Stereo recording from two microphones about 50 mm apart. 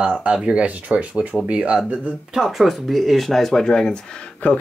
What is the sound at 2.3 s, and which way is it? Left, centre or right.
Speech, centre.